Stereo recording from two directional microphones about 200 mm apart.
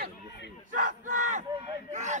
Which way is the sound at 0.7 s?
40° right (ahead or behind).